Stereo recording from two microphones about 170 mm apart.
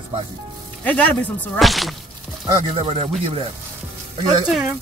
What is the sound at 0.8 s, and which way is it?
Speech, 10° left (ahead or behind).